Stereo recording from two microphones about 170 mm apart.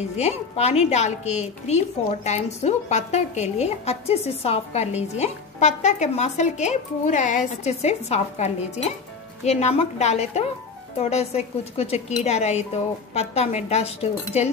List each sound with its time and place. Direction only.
0.2 s a woman's voice: 40° left (ahead or behind)